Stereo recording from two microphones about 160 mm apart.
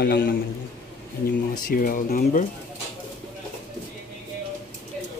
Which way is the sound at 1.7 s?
60° left (ahead or behind).